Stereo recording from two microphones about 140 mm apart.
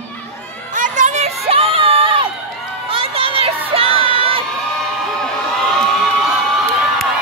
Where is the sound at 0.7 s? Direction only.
65° right (ahead or behind).